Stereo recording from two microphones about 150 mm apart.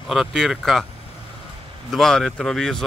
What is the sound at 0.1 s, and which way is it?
Speech, centre (ahead or behind).